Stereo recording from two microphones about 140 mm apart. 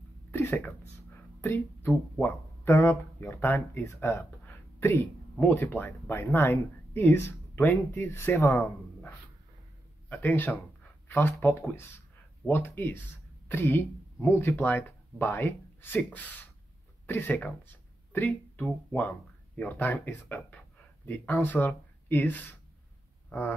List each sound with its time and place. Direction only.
0.3 s speech: 15° left (ahead or behind)